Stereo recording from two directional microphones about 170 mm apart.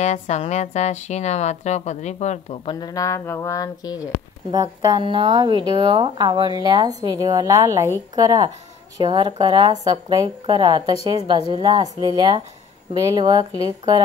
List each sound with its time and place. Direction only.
0.0 s a woman's voice: 40° left (ahead or behind); by 4.1 s 20° left (ahead or behind)
4.5 s speech: 25° right (ahead or behind)